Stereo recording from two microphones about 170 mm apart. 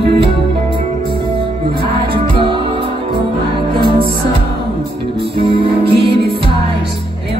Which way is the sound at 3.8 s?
30° right (ahead or behind).